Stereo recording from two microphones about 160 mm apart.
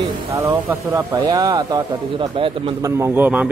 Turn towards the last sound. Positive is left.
turn(degrees=-10)  # may be behind; listen again after turning